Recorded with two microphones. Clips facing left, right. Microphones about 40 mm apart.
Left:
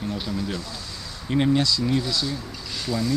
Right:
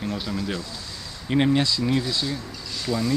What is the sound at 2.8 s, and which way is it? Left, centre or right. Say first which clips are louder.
Speech: right 1 dB; centre.